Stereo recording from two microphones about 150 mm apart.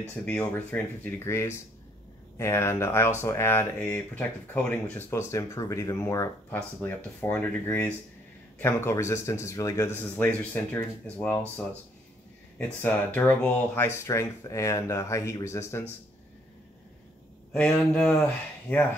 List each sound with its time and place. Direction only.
0.1 s speech: 5° left (ahead or behind)
12.8 s speech: 10° left (ahead or behind)
17.5 s speech: 5° left (ahead or behind)